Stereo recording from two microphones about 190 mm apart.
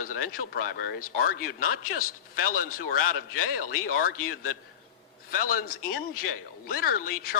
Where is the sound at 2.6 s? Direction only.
50° left (ahead or behind).